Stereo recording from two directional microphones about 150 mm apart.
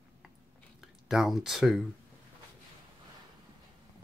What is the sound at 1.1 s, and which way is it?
Speech, 5° right (ahead or behind).